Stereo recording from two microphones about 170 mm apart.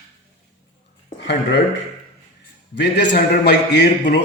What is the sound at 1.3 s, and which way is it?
A man's voice, 90° left.